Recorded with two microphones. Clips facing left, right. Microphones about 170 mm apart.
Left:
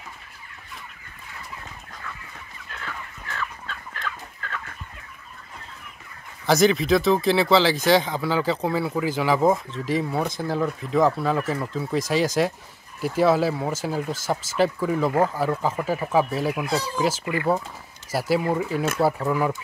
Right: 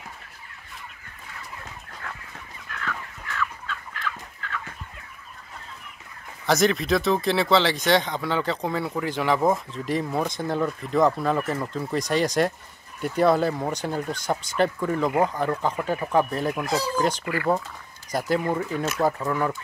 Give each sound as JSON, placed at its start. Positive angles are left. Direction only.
{"t": 2.0, "sound": "chicken", "side_deg": -60}
{"t": 2.7, "sound": "chicken", "side_deg": 30}
{"t": 6.4, "sound": "speech", "side_deg": 0}
{"t": 17.2, "sound": "speech", "side_deg": 20}
{"t": 18.1, "sound": "speech", "side_deg": 5}